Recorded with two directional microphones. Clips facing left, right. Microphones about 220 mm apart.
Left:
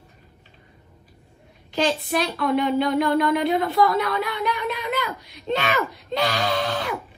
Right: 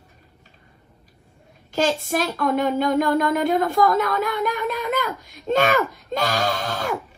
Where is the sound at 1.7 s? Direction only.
45° right (ahead or behind).